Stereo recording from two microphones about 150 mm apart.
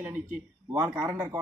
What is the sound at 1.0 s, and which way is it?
Speech, 20° right (ahead or behind).